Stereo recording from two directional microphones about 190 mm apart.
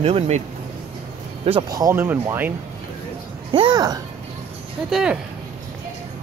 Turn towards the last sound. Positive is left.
turn(degrees=-5)  # may be behind; listen again after turning